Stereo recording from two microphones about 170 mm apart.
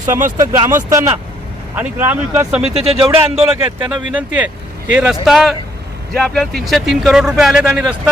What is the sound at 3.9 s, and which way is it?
Speech, 10° right (ahead or behind).